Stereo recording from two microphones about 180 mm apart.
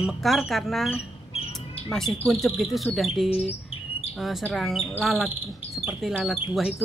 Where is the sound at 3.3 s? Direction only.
35° left (ahead or behind).